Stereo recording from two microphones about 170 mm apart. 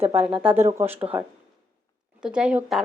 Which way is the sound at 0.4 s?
15° right (ahead or behind).